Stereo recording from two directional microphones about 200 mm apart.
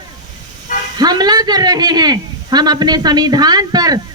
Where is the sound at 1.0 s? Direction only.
20° right (ahead or behind).